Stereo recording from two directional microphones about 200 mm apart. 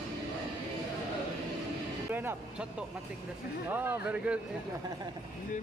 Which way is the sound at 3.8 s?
10° right (ahead or behind).